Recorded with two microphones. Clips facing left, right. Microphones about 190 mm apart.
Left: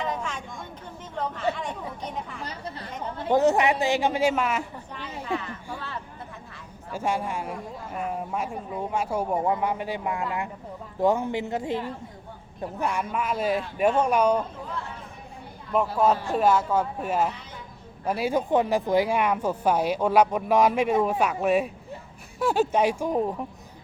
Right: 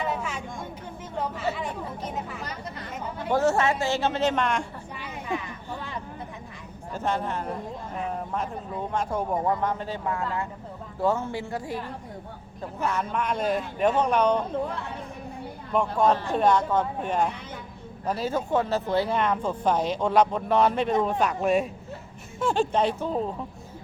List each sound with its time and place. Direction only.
0.0 s a sound: 5° right (ahead or behind)
1.2 s chatter: 5° right (ahead or behind)
3.2 s speech: 20° left (ahead or behind)
4.9 s a sound: 10° right (ahead or behind)
6.9 s a woman's voice: 10° left (ahead or behind)
12.8 s speech: 10° left (ahead or behind)
15.7 s speech: 5° left (ahead or behind)